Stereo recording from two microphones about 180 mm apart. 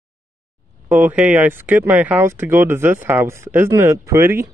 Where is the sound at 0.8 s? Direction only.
10° right (ahead or behind).